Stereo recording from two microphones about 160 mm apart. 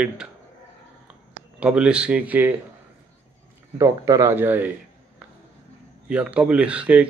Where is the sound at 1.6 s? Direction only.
5° right (ahead or behind).